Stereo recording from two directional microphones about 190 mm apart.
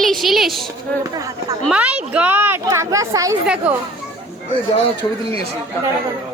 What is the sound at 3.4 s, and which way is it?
Speech, 5° right (ahead or behind).